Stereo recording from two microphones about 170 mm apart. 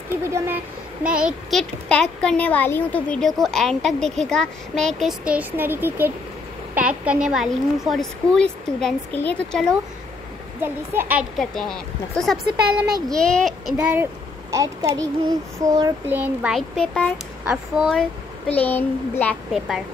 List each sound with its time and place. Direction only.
0.2 s a child's voice: 15° right (ahead or behind)
1.0 s speech: 5° right (ahead or behind)
10.6 s a child's voice: 10° right (ahead or behind)
11.3 s speech: 5° left (ahead or behind)
14.5 s child singing: 20° right (ahead or behind)
16.5 s speech: 5° left (ahead or behind)
18.5 s a child's voice: 10° left (ahead or behind)